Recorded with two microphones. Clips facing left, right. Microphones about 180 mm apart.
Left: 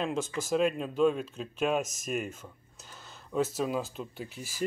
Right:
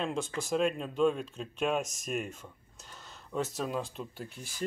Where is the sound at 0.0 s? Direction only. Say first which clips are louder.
Left 2 dB; centre (ahead or behind).